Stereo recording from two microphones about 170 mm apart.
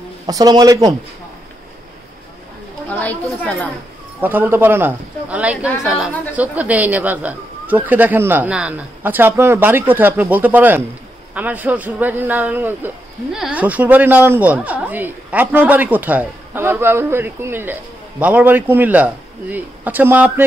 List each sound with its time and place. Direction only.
0.3 s a man's voice: 20° right (ahead or behind)
2.9 s speech: 10° left (ahead or behind)
4.2 s speech: 10° right (ahead or behind)